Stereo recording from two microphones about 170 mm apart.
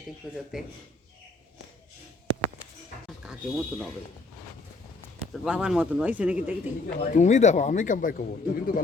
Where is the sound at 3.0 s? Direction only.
5° right (ahead or behind).